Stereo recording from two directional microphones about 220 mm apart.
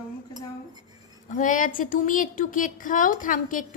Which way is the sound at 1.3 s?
35° left (ahead or behind).